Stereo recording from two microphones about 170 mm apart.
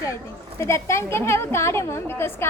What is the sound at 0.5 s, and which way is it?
A woman's voice, 15° left (ahead or behind).